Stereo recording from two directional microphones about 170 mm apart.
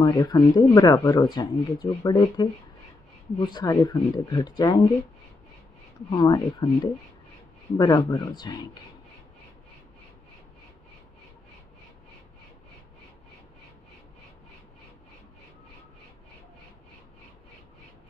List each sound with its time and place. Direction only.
0.0 s speech: 25° left (ahead or behind)
6.1 s speech: 25° left (ahead or behind)